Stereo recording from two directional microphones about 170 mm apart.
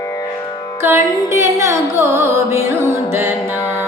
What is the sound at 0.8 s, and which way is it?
Music, 15° right (ahead or behind).